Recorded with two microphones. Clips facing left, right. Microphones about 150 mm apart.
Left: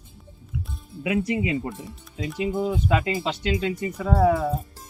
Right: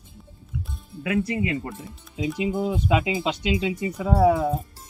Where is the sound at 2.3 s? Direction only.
15° right (ahead or behind).